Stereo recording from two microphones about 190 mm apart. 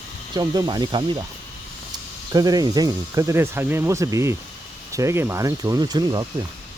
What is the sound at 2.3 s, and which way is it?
Speech, 20° right (ahead or behind).